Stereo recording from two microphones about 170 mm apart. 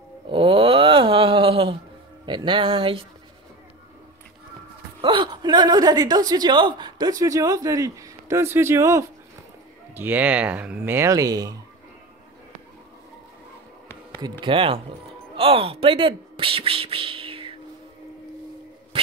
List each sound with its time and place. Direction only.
0.3 s wail: 30° right (ahead or behind)
2.2 s speech: 30° right (ahead or behind)
5.0 s a woman's voice: 25° right (ahead or behind)
14.4 s a man's voice: 30° right (ahead or behind)